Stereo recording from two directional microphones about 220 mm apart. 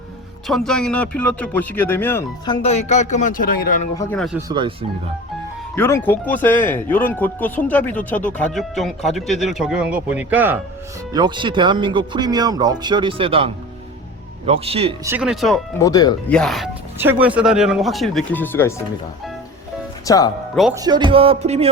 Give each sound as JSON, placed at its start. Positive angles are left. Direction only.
{"t": 0.4, "sound": "speech", "side_deg": 0}
{"t": 2.6, "sound": "a man's voice", "side_deg": 30}
{"t": 3.9, "sound": "speech", "side_deg": 5}
{"t": 4.4, "sound": "speech", "side_deg": -20}
{"t": 5.7, "sound": "speech", "side_deg": 10}
{"t": 11.1, "sound": "speech", "side_deg": -20}
{"t": 15.0, "sound": "speech", "side_deg": -5}
{"t": 15.8, "sound": "speech", "side_deg": 15}
{"t": 16.3, "sound": "speech", "side_deg": 0}
{"t": 20.1, "sound": "speech", "side_deg": 15}
{"t": 20.7, "sound": "speech", "side_deg": -20}